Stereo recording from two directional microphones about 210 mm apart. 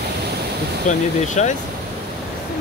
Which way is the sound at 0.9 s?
35° left (ahead or behind).